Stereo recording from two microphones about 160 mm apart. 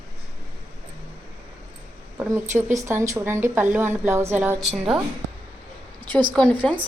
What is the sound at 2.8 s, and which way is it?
A woman's voice, 15° right (ahead or behind).